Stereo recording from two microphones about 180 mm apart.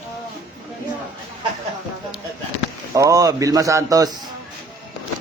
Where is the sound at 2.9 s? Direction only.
15° right (ahead or behind).